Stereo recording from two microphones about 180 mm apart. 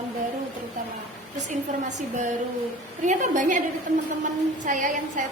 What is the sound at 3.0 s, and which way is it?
Speech, 45° right (ahead or behind).